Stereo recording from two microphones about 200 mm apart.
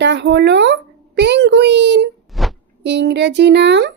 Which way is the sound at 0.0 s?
60° right (ahead or behind).